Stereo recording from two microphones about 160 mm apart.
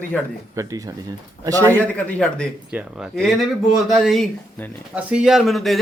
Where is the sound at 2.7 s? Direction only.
5° right (ahead or behind).